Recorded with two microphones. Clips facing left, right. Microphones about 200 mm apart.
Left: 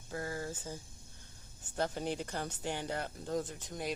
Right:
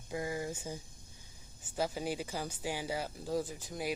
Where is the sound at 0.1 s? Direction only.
15° right (ahead or behind).